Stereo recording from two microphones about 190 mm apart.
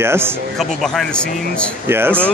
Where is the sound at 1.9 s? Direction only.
10° right (ahead or behind).